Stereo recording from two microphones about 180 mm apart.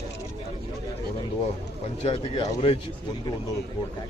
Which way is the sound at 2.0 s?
30° left (ahead or behind).